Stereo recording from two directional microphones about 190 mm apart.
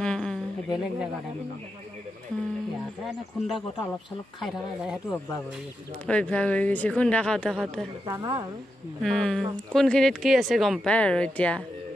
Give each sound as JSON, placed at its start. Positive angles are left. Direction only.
{"t": 0.0, "sound": "a sound", "side_deg": 5}
{"t": 4.4, "sound": "speech", "side_deg": 0}
{"t": 8.1, "sound": "speech", "side_deg": -20}
{"t": 9.0, "sound": "speech", "side_deg": 5}